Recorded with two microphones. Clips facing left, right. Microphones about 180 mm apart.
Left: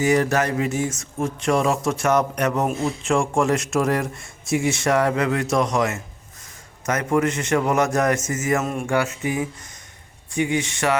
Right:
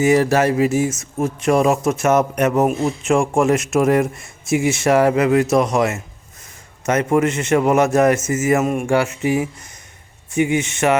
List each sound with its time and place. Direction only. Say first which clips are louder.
0.0 s speech: right 5 dB; 25° right (ahead or behind)
8.6 s speech: right 6 dB; 15° right (ahead or behind)
8.9 s speech: right 3 dB; 25° right (ahead or behind)
10.5 s speech: right 3 dB; 25° right (ahead or behind)